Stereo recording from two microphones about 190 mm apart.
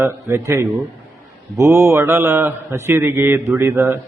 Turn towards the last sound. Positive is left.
turn(degrees=-15)  # may be behind; listen again after turning